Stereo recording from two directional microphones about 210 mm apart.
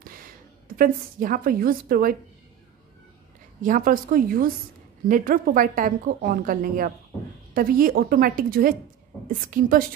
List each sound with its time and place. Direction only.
0.7 s a woman's voice: 40° right (ahead or behind)
3.6 s a woman's voice: 40° right (ahead or behind)